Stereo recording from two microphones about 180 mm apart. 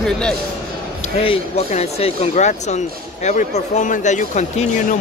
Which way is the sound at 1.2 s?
35° left (ahead or behind).